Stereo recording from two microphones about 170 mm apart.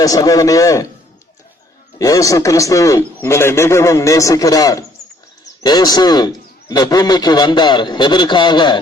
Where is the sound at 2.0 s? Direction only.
20° left (ahead or behind).